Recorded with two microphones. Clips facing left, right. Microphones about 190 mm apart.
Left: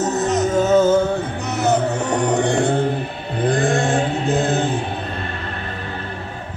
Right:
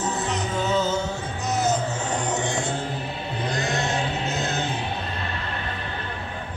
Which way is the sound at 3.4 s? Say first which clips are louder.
Left 9 dB; 50° left (ahead or behind).